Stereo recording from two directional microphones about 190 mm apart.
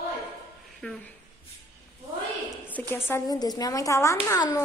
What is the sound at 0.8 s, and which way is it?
Speech, 5° left (ahead or behind).